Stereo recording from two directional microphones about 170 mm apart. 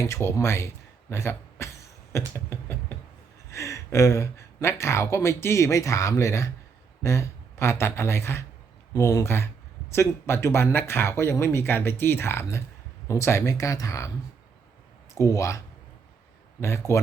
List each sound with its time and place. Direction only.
0.0 s speech: 15° left (ahead or behind)
1.1 s a sound: 15° left (ahead or behind)
3.5 s speech: 15° left (ahead or behind)
15.1 s speech: 20° left (ahead or behind)